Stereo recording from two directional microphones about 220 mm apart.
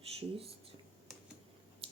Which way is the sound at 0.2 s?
25° right (ahead or behind).